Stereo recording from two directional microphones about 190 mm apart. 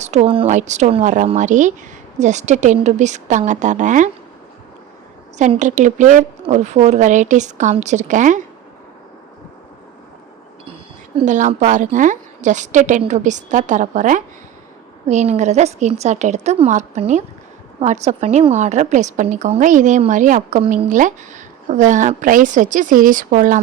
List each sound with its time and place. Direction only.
0.0 s a woman's voice: 35° right (ahead or behind)
5.4 s a woman's voice: 40° right (ahead or behind)
11.3 s a woman's voice: 40° right (ahead or behind)